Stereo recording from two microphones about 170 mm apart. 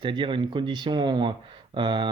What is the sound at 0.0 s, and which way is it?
Speech, 30° right (ahead or behind).